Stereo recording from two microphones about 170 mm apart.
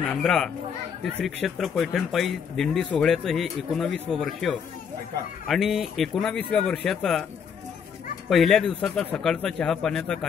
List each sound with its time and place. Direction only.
0.1 s speech: 5° left (ahead or behind)
8.3 s speech: centre (ahead or behind)